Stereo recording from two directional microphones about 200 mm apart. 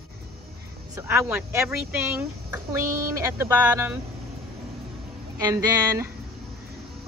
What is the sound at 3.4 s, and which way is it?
Speech, 10° right (ahead or behind).